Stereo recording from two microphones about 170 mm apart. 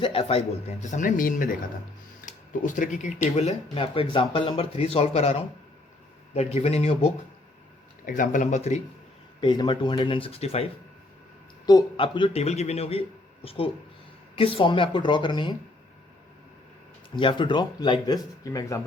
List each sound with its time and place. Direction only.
0.0 s speech: 35° left (ahead or behind); by 3.1 s 50° left (ahead or behind)
3.3 s a man's voice: 35° left (ahead or behind)
8.0 s speech: 50° left (ahead or behind)
9.4 s a man's voice: 25° left (ahead or behind)
17.2 s speech: 30° left (ahead or behind)